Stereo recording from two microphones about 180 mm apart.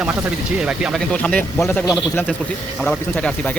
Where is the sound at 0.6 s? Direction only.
5° right (ahead or behind).